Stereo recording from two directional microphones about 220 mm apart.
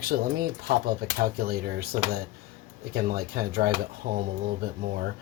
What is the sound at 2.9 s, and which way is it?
Speech, 45° right (ahead or behind).